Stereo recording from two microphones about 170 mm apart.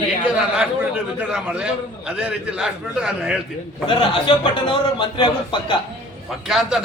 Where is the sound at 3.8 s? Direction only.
30° left (ahead or behind).